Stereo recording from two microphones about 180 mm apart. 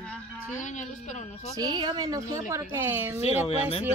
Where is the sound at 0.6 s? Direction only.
45° left (ahead or behind).